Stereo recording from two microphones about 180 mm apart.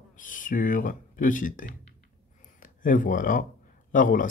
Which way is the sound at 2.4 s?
45° left (ahead or behind).